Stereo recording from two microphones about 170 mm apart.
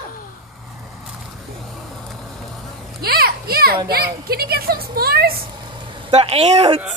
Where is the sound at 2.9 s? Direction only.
65° right (ahead or behind).